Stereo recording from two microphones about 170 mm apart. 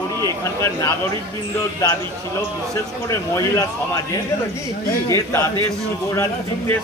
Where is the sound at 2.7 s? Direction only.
20° left (ahead or behind).